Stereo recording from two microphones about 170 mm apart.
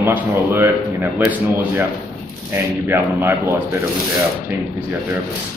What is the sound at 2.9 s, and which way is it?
Speech, 15° right (ahead or behind).